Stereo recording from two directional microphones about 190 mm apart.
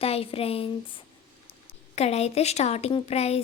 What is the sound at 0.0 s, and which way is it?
A woman's voice, 30° left (ahead or behind).